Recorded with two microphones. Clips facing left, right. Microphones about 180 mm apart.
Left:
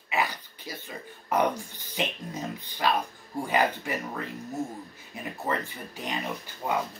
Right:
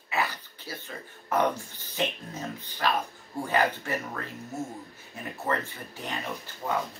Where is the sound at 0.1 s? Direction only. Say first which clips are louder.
Left 1 dB; 15° left (ahead or behind).